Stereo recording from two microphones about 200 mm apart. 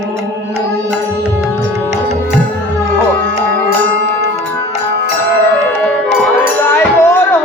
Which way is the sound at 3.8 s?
70° right (ahead or behind).